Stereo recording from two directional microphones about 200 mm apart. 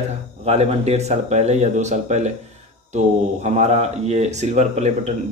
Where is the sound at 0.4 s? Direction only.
30° right (ahead or behind).